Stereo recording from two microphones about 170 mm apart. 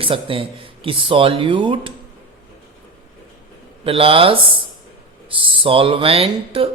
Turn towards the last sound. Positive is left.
turn(degrees=-35)  # may be behind; listen again after turning